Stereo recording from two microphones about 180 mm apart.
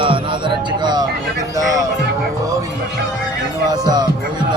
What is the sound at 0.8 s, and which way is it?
Vehicle, 25° right (ahead or behind).